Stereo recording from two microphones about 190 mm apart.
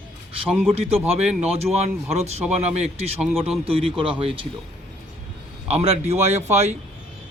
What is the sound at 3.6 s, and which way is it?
Speech, 30° right (ahead or behind).